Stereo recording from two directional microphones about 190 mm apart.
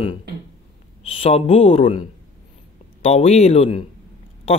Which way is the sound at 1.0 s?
30° left (ahead or behind).